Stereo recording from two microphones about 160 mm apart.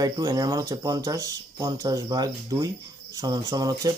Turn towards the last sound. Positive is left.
turn(degrees=-20)  # may be behind; listen again after turning